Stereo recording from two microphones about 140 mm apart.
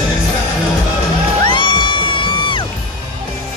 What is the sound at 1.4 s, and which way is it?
Music, 35° left (ahead or behind).